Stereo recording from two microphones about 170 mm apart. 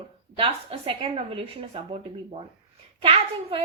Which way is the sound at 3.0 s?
35° right (ahead or behind).